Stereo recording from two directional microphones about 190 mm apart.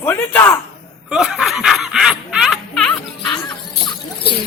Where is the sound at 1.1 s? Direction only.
5° right (ahead or behind).